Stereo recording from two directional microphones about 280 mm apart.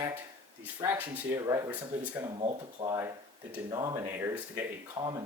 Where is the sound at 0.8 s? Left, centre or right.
Centre.